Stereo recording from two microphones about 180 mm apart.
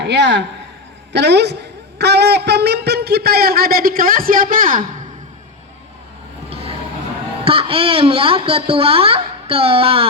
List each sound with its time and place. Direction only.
0.0 s a woman's voice: 75° right (ahead or behind); by 4.9 s 50° right (ahead or behind)
6.5 s a sound: 35° right (ahead or behind)
7.4 s a woman's voice: 30° right (ahead or behind)